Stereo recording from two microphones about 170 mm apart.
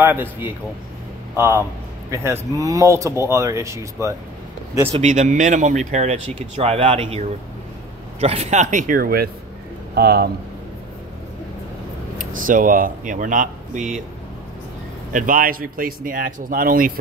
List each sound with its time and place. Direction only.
0.0 s speech: 10° right (ahead or behind)
4.8 s speech: 40° right (ahead or behind); by 10.3 s 70° right (ahead or behind)
12.2 s speech: 50° right (ahead or behind)
15.1 s speech: 55° right (ahead or behind)